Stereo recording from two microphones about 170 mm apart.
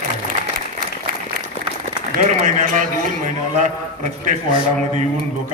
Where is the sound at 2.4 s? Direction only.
50° right (ahead or behind).